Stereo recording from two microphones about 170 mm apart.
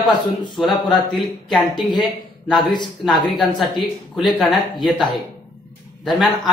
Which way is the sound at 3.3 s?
Centre (ahead or behind).